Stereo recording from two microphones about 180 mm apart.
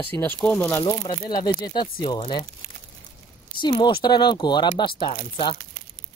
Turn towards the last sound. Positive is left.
turn(degrees=30)  # may be behind; listen again after turning